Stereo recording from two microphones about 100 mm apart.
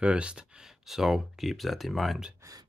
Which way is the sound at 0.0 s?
10° right (ahead or behind).